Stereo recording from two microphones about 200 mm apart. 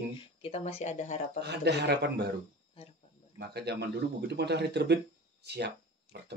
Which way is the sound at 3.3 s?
55° right (ahead or behind).